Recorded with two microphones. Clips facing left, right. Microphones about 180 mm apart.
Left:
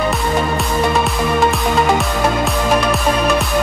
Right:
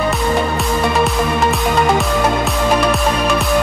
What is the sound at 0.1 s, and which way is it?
Music, centre (ahead or behind).